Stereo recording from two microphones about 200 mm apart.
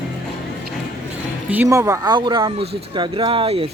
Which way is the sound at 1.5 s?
15° right (ahead or behind).